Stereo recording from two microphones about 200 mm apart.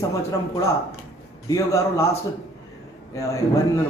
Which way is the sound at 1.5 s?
15° left (ahead or behind).